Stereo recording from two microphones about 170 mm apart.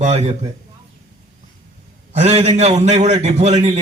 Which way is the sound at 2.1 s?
40° right (ahead or behind).